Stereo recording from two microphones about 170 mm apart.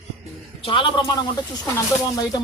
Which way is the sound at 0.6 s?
30° left (ahead or behind).